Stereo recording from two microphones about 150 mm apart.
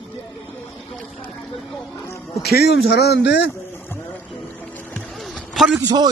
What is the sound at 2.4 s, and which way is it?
Speech, 90° left.